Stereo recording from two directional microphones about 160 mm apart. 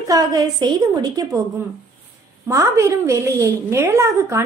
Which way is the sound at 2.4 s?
20° right (ahead or behind).